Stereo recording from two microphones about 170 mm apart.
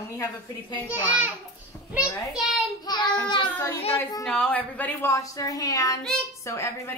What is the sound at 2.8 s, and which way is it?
Child singing, 25° left (ahead or behind).